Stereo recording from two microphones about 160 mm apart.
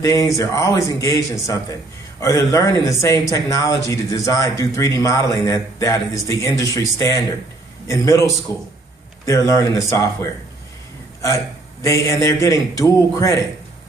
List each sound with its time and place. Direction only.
0.0 s speech: 20° left (ahead or behind)
11.8 s speech: 20° left (ahead or behind)